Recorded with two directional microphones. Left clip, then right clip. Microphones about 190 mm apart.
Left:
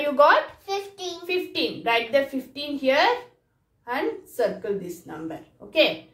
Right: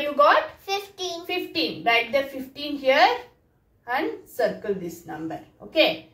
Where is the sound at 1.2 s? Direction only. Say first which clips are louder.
Left 2 dB; 35° left (ahead or behind).